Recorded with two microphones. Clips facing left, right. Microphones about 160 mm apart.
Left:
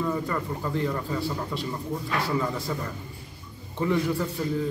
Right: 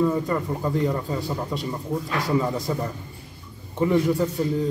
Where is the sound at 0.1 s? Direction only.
20° right (ahead or behind).